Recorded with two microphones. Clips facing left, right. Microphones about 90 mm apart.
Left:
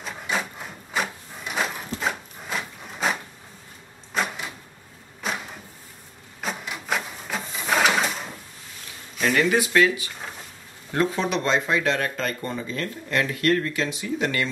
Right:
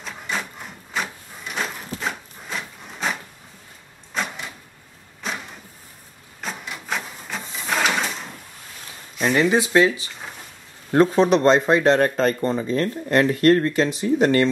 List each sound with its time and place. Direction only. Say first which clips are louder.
0.0 s wood: left 1 dB; centre (ahead or behind)
4.1 s vehicle: left 1 dB; 5° left (ahead or behind)
5.2 s a sound: left 1 dB; 5° left (ahead or behind)
6.4 s printer: left 1 dB; centre (ahead or behind)
9.5 s speech: right 3 dB; 25° right (ahead or behind)
10.9 s speech: right 8 dB; 40° right (ahead or behind)